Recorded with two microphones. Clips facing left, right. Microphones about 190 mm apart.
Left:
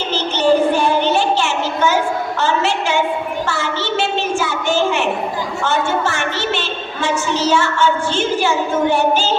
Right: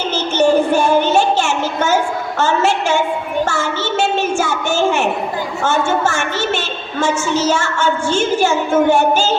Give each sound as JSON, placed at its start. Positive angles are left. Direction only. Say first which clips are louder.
{"t": 0.3, "sound": "child singing", "louder": "right 1 dB", "side_deg": -45}
{"t": 2.4, "sound": "a woman's voice", "louder": "right 4 dB", "side_deg": -45}
{"t": 3.4, "sound": "a sound", "louder": "right 2 dB", "side_deg": -45}
{"t": 7.0, "sound": "a woman's voice", "louder": "right 2 dB", "side_deg": -45}